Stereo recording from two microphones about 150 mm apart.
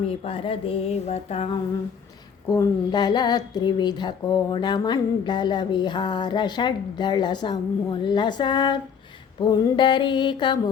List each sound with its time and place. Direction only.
0.2 s speech: 40° left (ahead or behind)
2.5 s speech: 25° left (ahead or behind)